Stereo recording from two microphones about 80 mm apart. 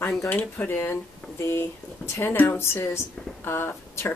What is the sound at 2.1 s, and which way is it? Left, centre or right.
Speech, left.